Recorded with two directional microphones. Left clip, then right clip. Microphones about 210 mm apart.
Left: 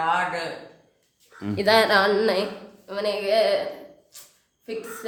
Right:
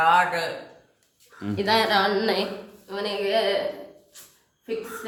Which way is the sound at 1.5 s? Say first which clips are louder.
Left 3 dB; 55° left (ahead or behind).